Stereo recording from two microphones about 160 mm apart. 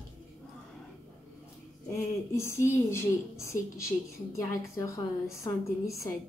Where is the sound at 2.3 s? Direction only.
15° left (ahead or behind).